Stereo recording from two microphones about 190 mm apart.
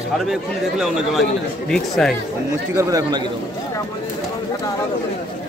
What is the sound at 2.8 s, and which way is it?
Speech, 20° right (ahead or behind).